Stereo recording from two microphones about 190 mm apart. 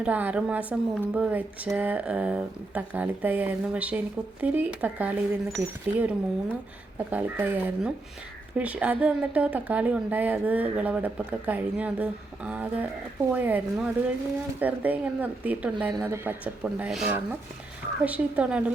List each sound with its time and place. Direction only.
0.0 s a woman's voice: 10° right (ahead or behind)